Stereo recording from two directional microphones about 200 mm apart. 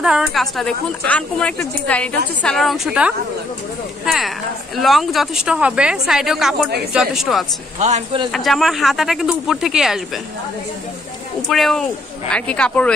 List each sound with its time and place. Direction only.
0.0 s a woman's voice: centre (ahead or behind)
7.8 s speech: 35° right (ahead or behind)
8.3 s a woman's voice: centre (ahead or behind)
11.4 s a woman's voice: centre (ahead or behind)